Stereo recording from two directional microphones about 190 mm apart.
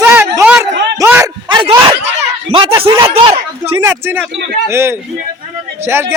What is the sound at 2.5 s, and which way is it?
Speech, 25° right (ahead or behind).